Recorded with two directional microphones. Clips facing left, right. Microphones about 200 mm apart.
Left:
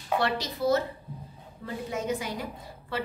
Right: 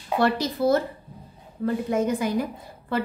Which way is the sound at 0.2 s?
50° right (ahead or behind).